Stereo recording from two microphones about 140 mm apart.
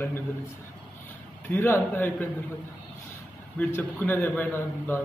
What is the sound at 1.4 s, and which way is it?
Speech, 15° left (ahead or behind).